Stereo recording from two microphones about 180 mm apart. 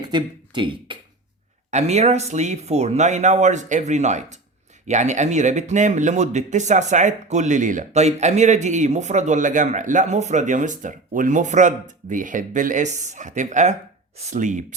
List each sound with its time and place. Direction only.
0.0 s speech: 25° right (ahead or behind)
1.7 s speech: 40° right (ahead or behind)